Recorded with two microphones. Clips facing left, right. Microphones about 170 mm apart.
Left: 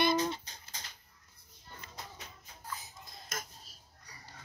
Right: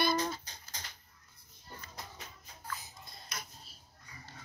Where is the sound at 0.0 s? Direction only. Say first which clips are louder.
Left 2 dB; 20° left (ahead or behind).